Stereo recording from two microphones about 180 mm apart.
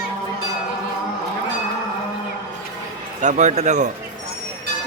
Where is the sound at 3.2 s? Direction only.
40° right (ahead or behind).